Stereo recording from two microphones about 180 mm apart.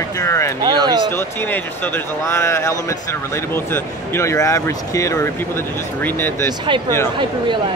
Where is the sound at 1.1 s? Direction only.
10° left (ahead or behind).